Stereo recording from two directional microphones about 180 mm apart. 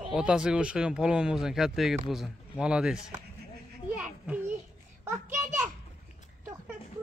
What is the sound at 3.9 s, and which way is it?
Children playing, 5° right (ahead or behind).